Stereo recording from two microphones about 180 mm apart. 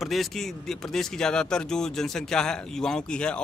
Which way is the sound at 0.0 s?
Centre (ahead or behind).